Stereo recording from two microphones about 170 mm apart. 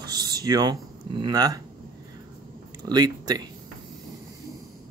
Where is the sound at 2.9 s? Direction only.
25° right (ahead or behind).